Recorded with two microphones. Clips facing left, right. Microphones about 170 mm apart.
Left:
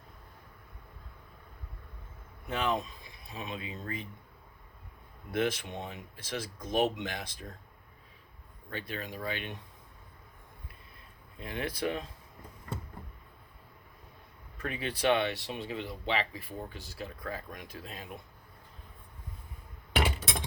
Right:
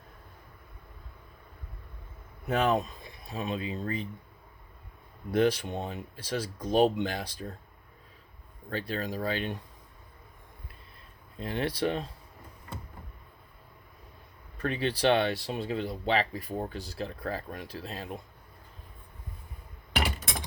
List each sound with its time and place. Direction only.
2.5 s speech: 45° right (ahead or behind)
3.3 s speech: 35° right (ahead or behind)
5.3 s speech: 30° right (ahead or behind)
8.7 s speech: 35° right (ahead or behind)
11.3 s speech: 30° right (ahead or behind)
14.6 s speech: 30° right (ahead or behind)